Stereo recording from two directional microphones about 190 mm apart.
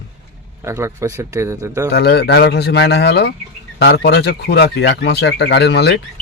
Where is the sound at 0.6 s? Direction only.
15° right (ahead or behind).